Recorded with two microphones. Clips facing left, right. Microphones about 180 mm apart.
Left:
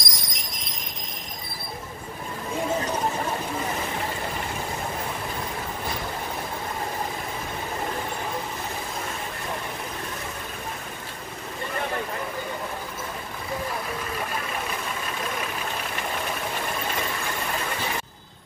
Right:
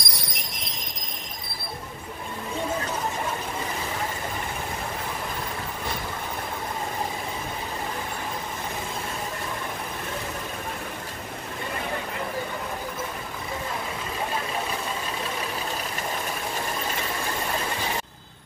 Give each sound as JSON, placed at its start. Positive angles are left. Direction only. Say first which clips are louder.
{"t": 0.0, "sound": "jingle bell", "louder": "right 1 dB", "side_deg": -60}